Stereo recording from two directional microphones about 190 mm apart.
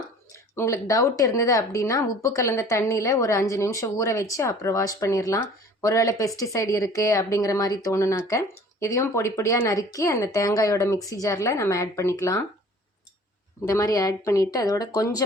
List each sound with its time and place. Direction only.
0.5 s speech: 15° left (ahead or behind)
13.7 s speech: 20° left (ahead or behind)